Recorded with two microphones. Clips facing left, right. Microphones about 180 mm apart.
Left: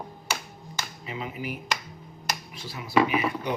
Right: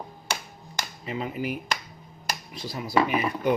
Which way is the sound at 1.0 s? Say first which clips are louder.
Right 5 dB; 40° right (ahead or behind).